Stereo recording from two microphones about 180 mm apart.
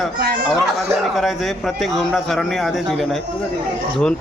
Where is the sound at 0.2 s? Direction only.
60° right (ahead or behind).